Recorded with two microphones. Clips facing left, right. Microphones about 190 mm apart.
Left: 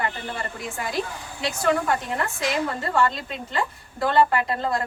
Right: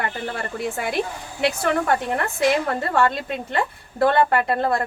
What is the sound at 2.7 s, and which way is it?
A woman's voice, 60° right (ahead or behind).